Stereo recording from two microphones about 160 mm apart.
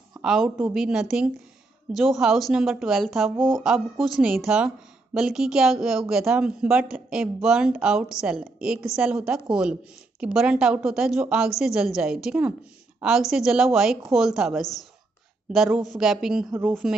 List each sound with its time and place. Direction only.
0.2 s a woman's voice: 5° right (ahead or behind)
3.3 s speech: 30° right (ahead or behind)
4.0 s a woman's voice: 5° right (ahead or behind)